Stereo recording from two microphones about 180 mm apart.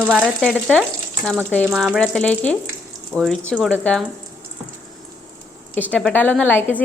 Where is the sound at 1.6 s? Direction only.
5° right (ahead or behind).